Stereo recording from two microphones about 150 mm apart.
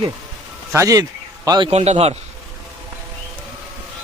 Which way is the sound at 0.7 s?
20° right (ahead or behind).